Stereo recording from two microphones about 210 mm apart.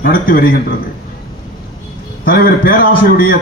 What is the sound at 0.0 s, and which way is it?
Speech, 45° left (ahead or behind).